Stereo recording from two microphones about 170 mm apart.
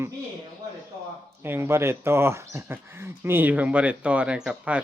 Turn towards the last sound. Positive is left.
turn(degrees=-5)  # may be behind; listen again after turning